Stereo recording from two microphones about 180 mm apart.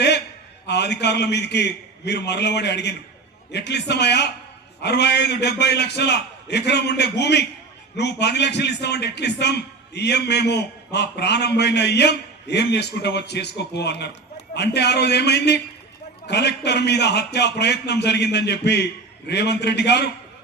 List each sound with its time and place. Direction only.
0.7 s a man's voice: 70° left (ahead or behind)